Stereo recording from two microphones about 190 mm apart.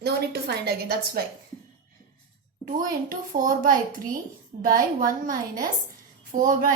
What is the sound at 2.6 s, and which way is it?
A child's voice, 45° right (ahead or behind).